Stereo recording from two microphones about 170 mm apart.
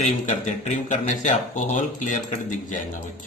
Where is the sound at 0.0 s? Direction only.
45° left (ahead or behind).